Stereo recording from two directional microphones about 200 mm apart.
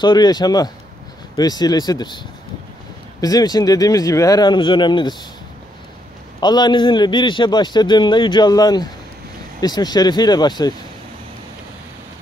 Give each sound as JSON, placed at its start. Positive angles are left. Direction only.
{"t": 0.0, "sound": "a man's voice", "side_deg": 20}
{"t": 6.4, "sound": "a man's voice", "side_deg": 20}